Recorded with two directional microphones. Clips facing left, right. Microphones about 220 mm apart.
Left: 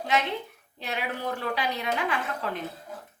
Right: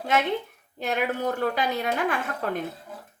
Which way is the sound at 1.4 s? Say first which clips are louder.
Right 4 dB; 45° right (ahead or behind).